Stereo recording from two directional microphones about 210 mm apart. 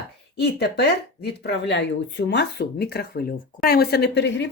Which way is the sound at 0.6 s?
50° left (ahead or behind).